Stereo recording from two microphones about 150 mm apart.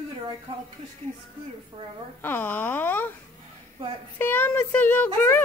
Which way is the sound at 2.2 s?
15° left (ahead or behind).